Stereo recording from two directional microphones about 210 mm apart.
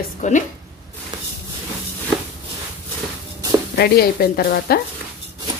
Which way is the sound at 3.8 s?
45° left (ahead or behind).